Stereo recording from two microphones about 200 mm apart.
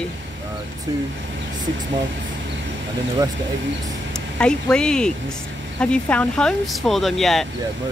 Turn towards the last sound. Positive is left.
turn(degrees=0)  # may be behind; listen again after turning